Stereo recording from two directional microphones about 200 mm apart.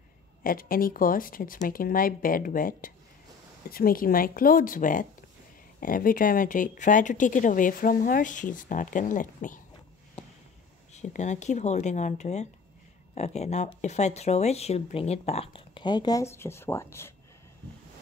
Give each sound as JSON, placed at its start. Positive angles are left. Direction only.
{"t": 0.4, "sound": "speech", "side_deg": 45}
{"t": 11.0, "sound": "speech", "side_deg": 35}